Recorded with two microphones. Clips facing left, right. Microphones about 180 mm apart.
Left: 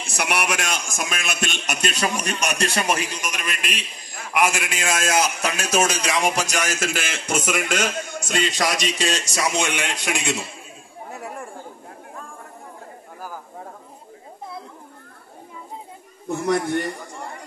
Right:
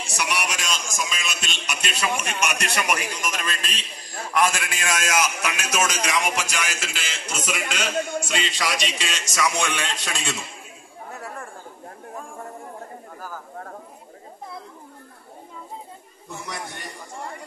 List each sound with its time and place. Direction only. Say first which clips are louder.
0.0 s a man's voice: left 3 dB; 55° left (ahead or behind); by 9.6 s 30° left (ahead or behind)
9.6 s a man's voice: left 2 dB; 15° left (ahead or behind)
11.1 s chatter: left 2 dB; 15° left (ahead or behind)
16.4 s a man's voice: left 15 dB; 60° left (ahead or behind)